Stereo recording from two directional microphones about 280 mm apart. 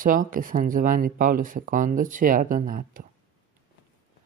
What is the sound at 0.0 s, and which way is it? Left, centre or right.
Speech, right.